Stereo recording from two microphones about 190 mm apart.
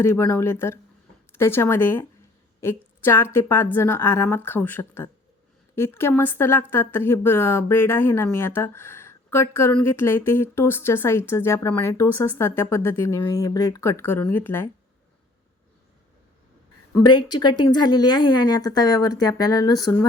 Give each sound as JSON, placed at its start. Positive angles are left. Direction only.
{"t": 0.0, "sound": "a woman's voice", "side_deg": 15}
{"t": 17.1, "sound": "a woman's voice", "side_deg": 20}